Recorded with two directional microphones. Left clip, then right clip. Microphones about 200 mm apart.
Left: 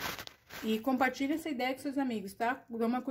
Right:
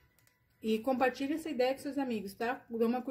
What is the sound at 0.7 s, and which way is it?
Speech, 20° left (ahead or behind).